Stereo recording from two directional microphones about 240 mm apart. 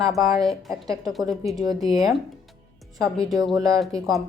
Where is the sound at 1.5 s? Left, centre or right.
Centre.